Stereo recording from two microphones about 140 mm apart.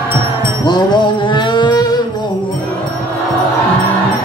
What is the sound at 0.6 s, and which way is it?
Music, 30° left (ahead or behind).